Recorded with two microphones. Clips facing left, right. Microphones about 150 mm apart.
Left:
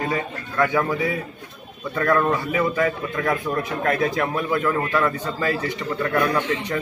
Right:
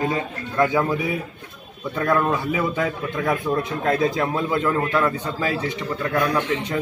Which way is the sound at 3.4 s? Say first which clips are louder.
Right 1 dB; 25° right (ahead or behind).